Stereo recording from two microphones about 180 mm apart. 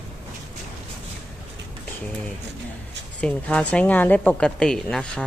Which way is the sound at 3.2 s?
5° left (ahead or behind).